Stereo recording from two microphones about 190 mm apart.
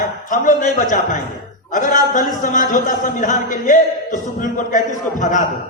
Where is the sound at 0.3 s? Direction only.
45° left (ahead or behind).